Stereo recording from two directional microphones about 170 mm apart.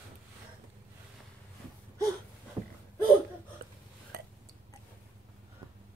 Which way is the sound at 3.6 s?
70° right (ahead or behind).